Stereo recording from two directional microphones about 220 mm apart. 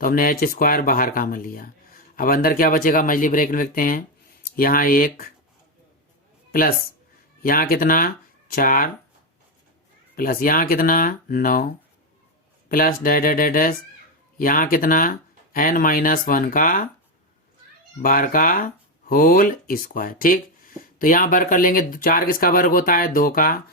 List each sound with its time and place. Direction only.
0.0 s speech: 40° left (ahead or behind)
6.5 s speech: 40° left (ahead or behind)
10.2 s speech: 40° left (ahead or behind)
18.0 s speech: 40° left (ahead or behind)